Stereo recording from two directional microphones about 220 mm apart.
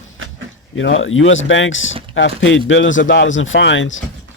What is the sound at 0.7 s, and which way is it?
A man's voice, 60° left (ahead or behind).